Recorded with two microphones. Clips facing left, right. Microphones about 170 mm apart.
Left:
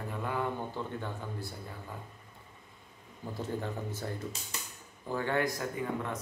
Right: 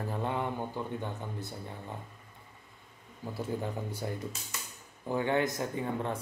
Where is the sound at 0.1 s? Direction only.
25° right (ahead or behind).